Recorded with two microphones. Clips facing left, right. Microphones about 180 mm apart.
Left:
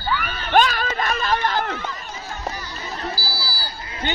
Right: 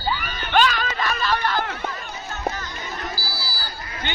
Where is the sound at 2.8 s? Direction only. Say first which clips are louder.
Left 5 dB; 35° left (ahead or behind).